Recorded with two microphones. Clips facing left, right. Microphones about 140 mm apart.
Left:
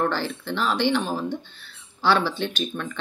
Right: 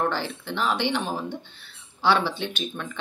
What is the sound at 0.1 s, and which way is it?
Speech, 15° right (ahead or behind).